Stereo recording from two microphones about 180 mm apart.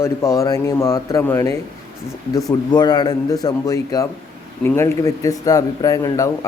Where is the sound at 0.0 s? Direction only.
15° left (ahead or behind).